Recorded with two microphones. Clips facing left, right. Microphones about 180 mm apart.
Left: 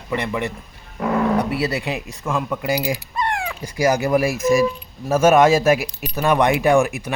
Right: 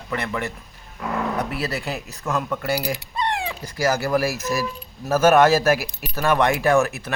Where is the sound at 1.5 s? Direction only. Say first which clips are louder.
Left 4 dB; 15° left (ahead or behind).